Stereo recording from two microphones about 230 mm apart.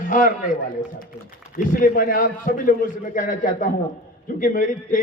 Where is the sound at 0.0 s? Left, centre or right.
Left.